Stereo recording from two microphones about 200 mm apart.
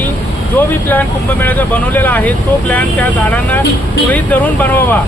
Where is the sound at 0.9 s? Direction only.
10° left (ahead or behind).